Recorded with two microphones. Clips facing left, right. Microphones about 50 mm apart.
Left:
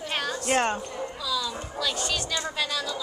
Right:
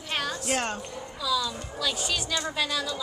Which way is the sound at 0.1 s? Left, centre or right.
Centre.